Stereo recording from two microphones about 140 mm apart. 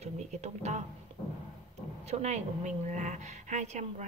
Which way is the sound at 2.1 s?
55° right (ahead or behind).